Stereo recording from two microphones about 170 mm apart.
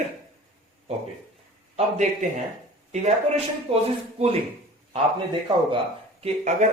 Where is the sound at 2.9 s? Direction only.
40° right (ahead or behind).